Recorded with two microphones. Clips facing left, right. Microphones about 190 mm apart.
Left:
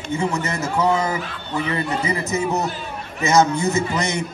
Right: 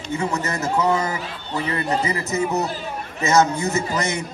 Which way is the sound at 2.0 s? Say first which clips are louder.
Left 1 dB; 20° left (ahead or behind).